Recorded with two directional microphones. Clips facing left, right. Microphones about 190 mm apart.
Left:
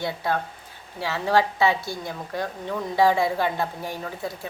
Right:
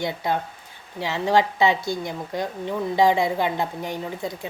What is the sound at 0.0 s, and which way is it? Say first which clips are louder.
A woman's voice: right 1 dB; 20° right (ahead or behind).